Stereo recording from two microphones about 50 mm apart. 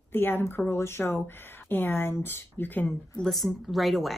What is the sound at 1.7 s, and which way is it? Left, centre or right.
Speech, left.